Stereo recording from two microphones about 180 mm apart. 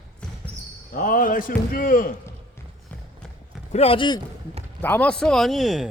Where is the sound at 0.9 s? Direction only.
50° left (ahead or behind).